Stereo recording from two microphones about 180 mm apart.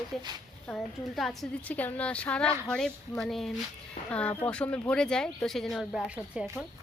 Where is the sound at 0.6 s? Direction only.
Centre (ahead or behind).